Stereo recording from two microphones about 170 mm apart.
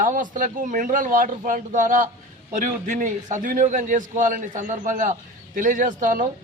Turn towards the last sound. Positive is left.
turn(degrees=-50)  # may be behind; listen again after turning